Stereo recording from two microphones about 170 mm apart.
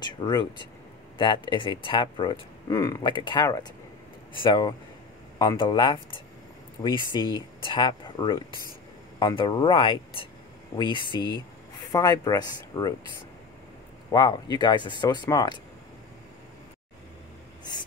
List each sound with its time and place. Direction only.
0.0 s speech: 25° left (ahead or behind)
7.1 s speech: 25° left (ahead or behind)
14.1 s speech: 25° left (ahead or behind)